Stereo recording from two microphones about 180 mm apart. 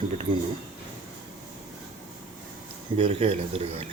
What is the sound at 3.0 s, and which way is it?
Speech, 30° right (ahead or behind).